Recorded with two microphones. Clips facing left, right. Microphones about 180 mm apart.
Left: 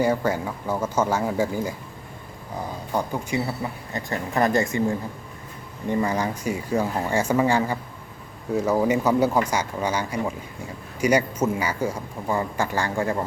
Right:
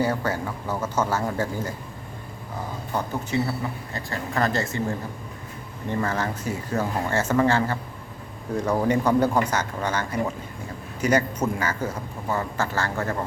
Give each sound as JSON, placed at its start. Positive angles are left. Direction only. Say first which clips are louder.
{"t": 0.0, "sound": "a man's voice", "louder": "left 3 dB", "side_deg": 10}
{"t": 2.9, "sound": "a man's voice", "louder": "left 1 dB", "side_deg": 15}